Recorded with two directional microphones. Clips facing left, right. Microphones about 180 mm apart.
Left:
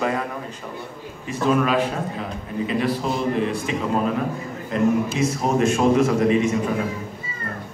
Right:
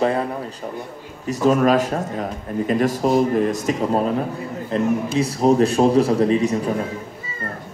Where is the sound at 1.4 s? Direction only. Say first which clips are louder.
Right 4 dB; 40° right (ahead or behind).